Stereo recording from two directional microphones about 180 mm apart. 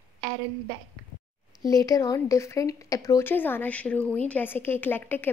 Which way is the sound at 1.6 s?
20° left (ahead or behind).